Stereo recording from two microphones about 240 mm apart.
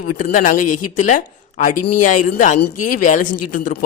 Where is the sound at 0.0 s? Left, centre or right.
Left.